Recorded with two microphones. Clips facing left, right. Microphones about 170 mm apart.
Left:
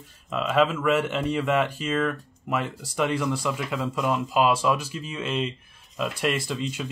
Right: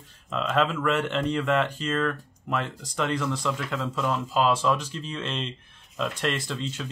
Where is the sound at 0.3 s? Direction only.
10° left (ahead or behind).